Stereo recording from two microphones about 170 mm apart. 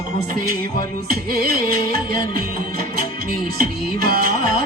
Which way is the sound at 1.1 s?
60° right (ahead or behind).